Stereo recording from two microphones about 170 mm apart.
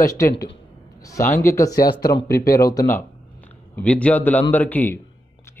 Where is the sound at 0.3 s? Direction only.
70° left (ahead or behind).